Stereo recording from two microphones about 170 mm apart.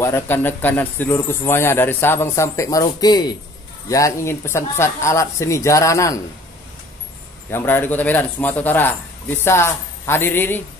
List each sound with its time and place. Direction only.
0.0 s speech: 15° left (ahead or behind)
7.5 s speech: 10° left (ahead or behind)